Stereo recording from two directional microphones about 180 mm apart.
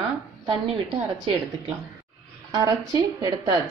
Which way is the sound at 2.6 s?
20° right (ahead or behind).